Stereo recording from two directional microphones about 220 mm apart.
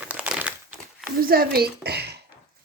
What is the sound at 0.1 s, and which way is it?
Crumpling, 5° right (ahead or behind).